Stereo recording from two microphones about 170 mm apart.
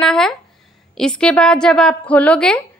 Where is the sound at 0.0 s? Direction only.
5° left (ahead or behind).